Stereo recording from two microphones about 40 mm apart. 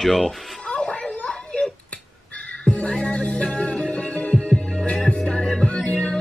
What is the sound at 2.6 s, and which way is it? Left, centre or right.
Music, left.